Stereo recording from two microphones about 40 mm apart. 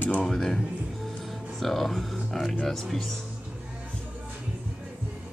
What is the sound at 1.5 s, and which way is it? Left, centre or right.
Speech, centre.